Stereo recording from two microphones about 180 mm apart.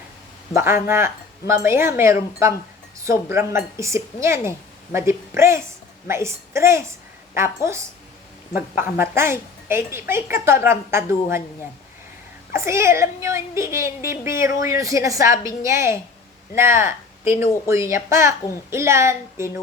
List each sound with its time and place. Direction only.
0.5 s a woman's voice: 15° right (ahead or behind)
12.5 s a woman's voice: 15° right (ahead or behind)